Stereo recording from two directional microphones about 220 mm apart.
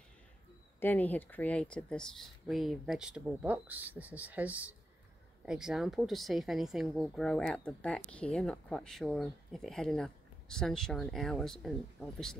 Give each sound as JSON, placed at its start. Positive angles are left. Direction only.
{"t": 0.7, "sound": "speech", "side_deg": 10}